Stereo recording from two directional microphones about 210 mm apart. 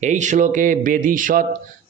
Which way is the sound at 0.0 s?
35° right (ahead or behind).